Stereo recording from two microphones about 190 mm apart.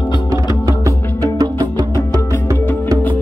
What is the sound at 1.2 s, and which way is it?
Music, 20° right (ahead or behind).